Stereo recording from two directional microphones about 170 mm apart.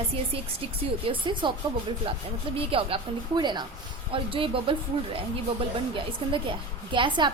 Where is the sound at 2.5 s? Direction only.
35° right (ahead or behind).